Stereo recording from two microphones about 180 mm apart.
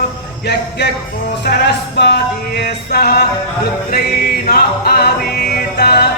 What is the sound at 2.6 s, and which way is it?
Music, 60° left (ahead or behind).